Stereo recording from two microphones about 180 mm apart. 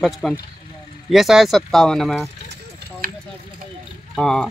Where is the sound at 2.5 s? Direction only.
55° right (ahead or behind).